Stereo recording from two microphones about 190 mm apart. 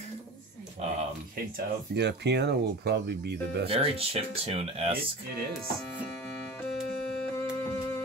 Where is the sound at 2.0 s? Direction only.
60° right (ahead or behind).